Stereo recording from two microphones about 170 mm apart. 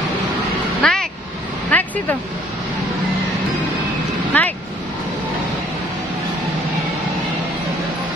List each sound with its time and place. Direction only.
0.8 s speech: 5° left (ahead or behind)
1.7 s vehicle: 10° left (ahead or behind)
4.3 s vehicle: 10° left (ahead or behind)